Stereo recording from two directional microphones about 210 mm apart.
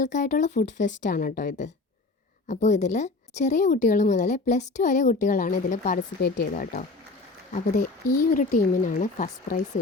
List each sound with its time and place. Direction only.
0.0 s a woman's voice: 35° left (ahead or behind)